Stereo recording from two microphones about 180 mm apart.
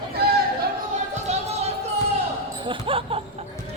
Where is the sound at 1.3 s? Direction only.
40° right (ahead or behind).